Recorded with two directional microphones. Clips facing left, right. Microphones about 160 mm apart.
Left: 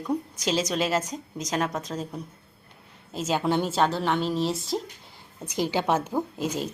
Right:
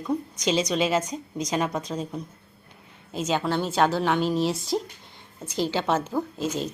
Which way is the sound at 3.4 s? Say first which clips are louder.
Left 2 dB; 15° left (ahead or behind).